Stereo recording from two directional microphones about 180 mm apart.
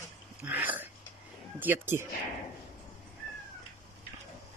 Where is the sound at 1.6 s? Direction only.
10° right (ahead or behind).